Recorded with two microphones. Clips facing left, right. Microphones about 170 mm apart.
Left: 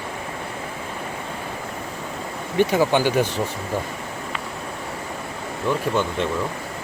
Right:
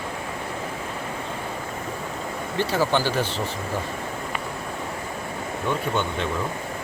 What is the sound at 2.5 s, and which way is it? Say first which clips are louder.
Speech: left 5 dB; 15° left (ahead or behind).